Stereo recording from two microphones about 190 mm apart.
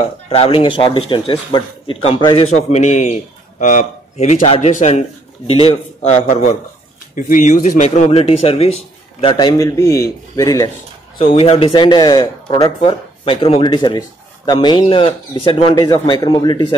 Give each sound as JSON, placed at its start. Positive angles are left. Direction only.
{"t": 0.3, "sound": "speech", "side_deg": 30}
{"t": 11.1, "sound": "speech", "side_deg": 30}